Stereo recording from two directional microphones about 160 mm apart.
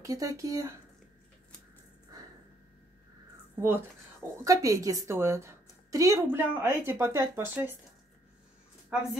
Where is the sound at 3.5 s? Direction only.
15° right (ahead or behind).